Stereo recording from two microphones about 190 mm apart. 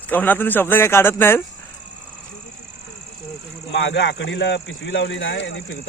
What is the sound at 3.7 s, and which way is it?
Speech, 70° left (ahead or behind).